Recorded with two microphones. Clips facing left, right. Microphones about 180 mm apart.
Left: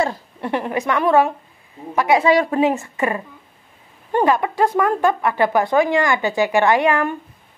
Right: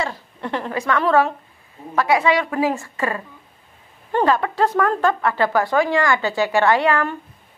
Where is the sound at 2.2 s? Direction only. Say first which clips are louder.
Left 3 dB; 40° left (ahead or behind).